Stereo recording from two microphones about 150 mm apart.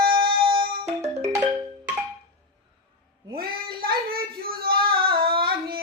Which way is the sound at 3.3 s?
80° right.